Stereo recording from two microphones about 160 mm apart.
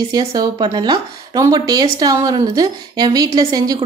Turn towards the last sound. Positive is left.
turn(degrees=-25)  # may be behind; listen again after turning